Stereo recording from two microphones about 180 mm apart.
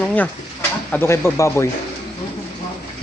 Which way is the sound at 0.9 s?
10° left (ahead or behind).